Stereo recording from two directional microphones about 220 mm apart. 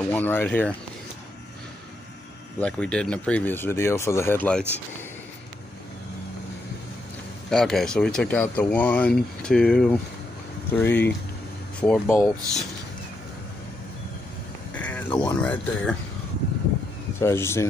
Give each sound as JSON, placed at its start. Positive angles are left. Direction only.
{"t": 0.1, "sound": "speech", "side_deg": 10}
{"t": 2.6, "sound": "speech", "side_deg": 5}
{"t": 7.4, "sound": "speech", "side_deg": 0}
{"t": 14.7, "sound": "a sound", "side_deg": 5}
{"t": 15.0, "sound": "speech", "side_deg": 20}
{"t": 15.4, "sound": "speech", "side_deg": 5}
{"t": 17.2, "sound": "speech", "side_deg": 10}